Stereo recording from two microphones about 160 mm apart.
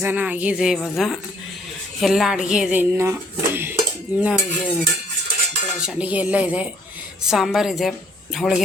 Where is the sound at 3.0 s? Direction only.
15° right (ahead or behind).